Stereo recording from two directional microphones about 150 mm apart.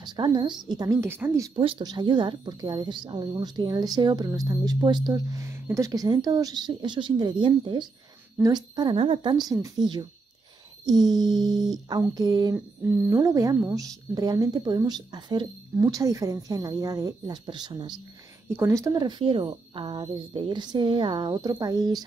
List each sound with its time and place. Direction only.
0.0 s a woman's voice: 30° right (ahead or behind)
1.5 s a woman's voice: 35° right (ahead or behind)
12.5 s a woman's voice: 15° right (ahead or behind)
18.5 s a woman's voice: 15° right (ahead or behind)